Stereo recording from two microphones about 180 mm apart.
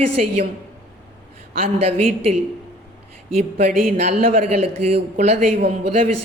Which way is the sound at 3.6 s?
40° right (ahead or behind).